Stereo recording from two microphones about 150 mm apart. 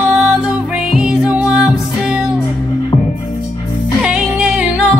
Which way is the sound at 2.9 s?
30° left (ahead or behind).